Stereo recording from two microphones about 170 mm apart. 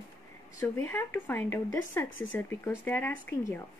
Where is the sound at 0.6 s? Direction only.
15° left (ahead or behind).